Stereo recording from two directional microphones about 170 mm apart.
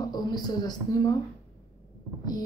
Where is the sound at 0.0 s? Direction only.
25° left (ahead or behind).